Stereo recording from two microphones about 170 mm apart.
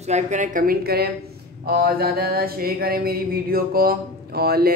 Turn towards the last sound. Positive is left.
turn(degrees=-65)  # may be behind; listen again after turning